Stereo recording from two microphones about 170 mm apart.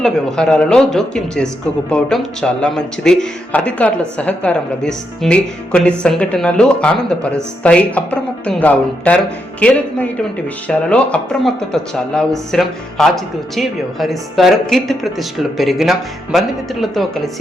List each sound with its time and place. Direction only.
0.0 s speech: 5° left (ahead or behind)